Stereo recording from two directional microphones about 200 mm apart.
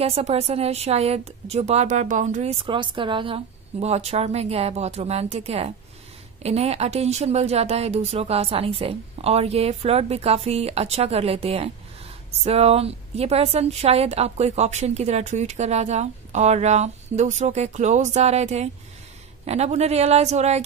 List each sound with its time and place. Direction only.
0.0 s a woman's voice: 30° right (ahead or behind)